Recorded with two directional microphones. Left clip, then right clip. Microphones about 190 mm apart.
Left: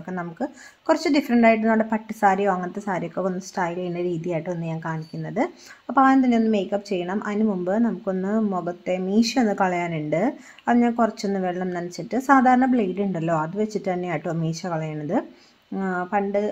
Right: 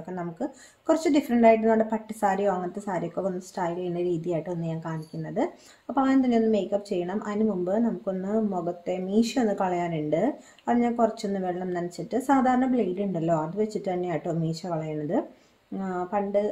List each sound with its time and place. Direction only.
0.1 s speech: 10° left (ahead or behind)
15.8 s speech: 10° left (ahead or behind)